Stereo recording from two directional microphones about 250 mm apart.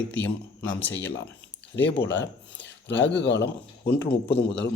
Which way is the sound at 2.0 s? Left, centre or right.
Left.